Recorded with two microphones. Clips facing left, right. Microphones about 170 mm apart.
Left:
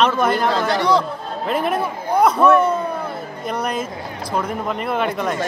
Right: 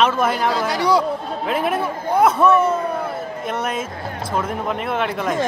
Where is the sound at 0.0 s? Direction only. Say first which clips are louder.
Left 1 dB; 5° right (ahead or behind).